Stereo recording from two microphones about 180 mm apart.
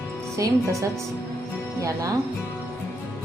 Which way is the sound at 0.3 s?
15° right (ahead or behind).